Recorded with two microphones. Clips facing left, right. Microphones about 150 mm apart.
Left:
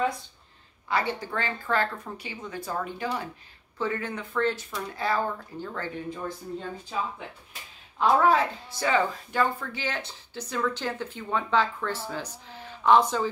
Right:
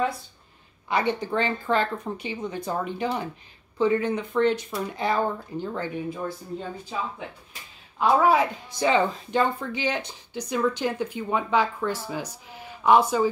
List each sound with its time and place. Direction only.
0.8 s speech: 20° right (ahead or behind)
8.0 s speech: 5° right (ahead or behind)